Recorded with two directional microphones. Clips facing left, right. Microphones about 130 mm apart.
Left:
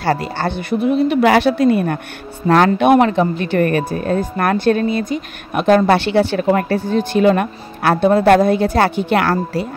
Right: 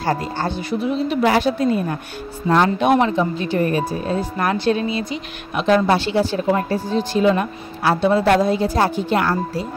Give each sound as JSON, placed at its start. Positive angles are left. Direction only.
{"t": 0.0, "sound": "speech", "side_deg": 75}